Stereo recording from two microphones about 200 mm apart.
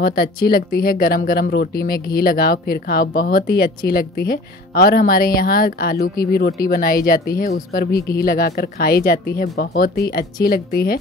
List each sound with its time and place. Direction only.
0.0 s speech: 50° left (ahead or behind)